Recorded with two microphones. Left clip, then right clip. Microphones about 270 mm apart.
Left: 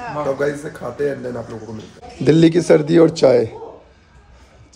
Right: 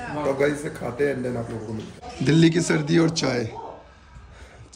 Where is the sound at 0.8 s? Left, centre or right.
Centre.